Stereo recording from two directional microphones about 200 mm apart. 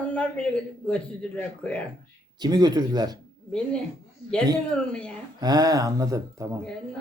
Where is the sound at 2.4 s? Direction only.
20° right (ahead or behind).